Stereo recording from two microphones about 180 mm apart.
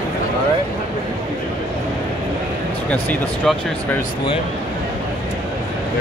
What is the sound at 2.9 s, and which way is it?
Speech, 10° left (ahead or behind).